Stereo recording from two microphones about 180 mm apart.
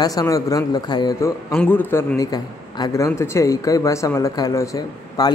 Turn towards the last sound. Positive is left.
turn(degrees=20)  # may be behind; listen again after turning